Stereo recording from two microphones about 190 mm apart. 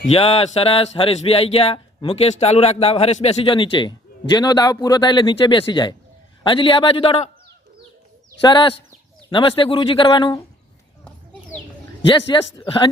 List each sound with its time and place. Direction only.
0.1 s speech: 30° left (ahead or behind)
8.4 s speech: 25° left (ahead or behind)
12.0 s speech: 25° left (ahead or behind)